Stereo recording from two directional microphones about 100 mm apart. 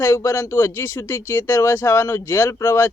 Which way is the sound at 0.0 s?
25° left (ahead or behind).